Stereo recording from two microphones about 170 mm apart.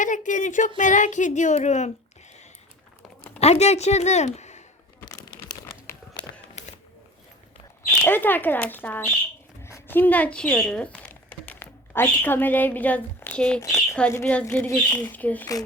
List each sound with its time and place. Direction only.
0.0 s speech: 50° left (ahead or behind)
3.4 s a woman's voice: 40° left (ahead or behind)
5.5 s crumpling: 20° left (ahead or behind)
7.9 s speech: 10° left (ahead or behind)
13.6 s speech: 20° left (ahead or behind)